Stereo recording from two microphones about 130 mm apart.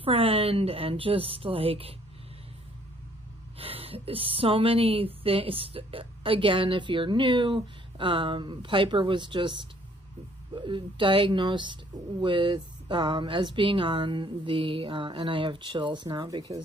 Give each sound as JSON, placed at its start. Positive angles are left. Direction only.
{"t": 0.0, "sound": "speech", "side_deg": -45}
{"t": 3.5, "sound": "a woman's voice", "side_deg": -45}